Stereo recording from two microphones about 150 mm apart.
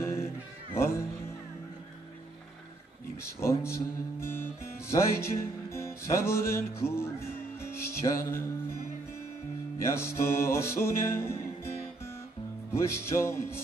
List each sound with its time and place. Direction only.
0.0 s cat: 15° left (ahead or behind)
0.7 s music: 15° left (ahead or behind)
3.2 s music: 15° left (ahead or behind)
9.8 s music: 15° left (ahead or behind)
12.7 s music: 15° left (ahead or behind)